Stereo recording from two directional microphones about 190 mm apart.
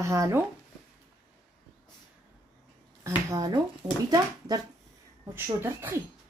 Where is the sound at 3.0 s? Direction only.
20° right (ahead or behind).